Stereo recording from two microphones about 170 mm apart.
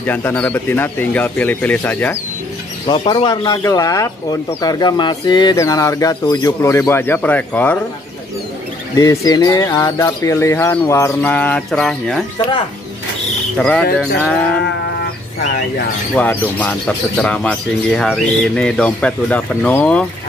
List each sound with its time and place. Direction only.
0.0 s speech: 10° left (ahead or behind)
2.9 s speech: 25° left (ahead or behind); by 7.8 s 10° left (ahead or behind)
8.9 s speech: 20° left (ahead or behind); by 12.3 s centre (ahead or behind)
13.6 s livestock: 5° left (ahead or behind)
16.2 s speech: 10° left (ahead or behind)